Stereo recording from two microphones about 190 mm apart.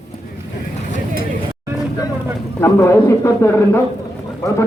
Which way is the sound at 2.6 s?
15° left (ahead or behind).